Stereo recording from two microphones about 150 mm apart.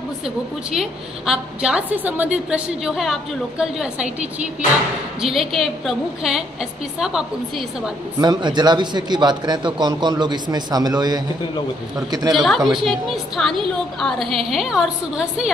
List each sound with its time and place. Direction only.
0.7 s a woman's voice: 5° right (ahead or behind)
5.2 s a woman's voice: centre (ahead or behind)
8.2 s a man's voice: 30° right (ahead or behind)
12.4 s a woman's voice: centre (ahead or behind)